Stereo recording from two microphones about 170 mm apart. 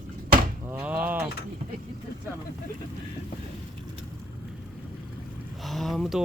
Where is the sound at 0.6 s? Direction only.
10° right (ahead or behind).